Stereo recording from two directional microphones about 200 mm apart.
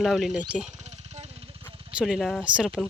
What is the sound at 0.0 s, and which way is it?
Speech, centre (ahead or behind).